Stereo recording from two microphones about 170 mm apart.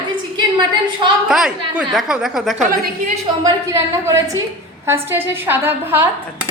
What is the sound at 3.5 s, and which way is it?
A woman's voice, 20° right (ahead or behind).